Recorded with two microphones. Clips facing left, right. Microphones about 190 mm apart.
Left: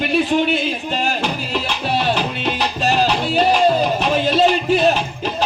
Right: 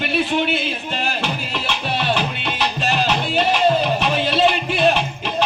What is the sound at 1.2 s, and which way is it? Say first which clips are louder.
Music: left 3 dB; 40° left (ahead or behind).